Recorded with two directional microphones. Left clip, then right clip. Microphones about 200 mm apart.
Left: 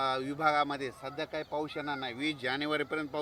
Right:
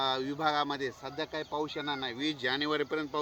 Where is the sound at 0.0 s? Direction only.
40° left (ahead or behind).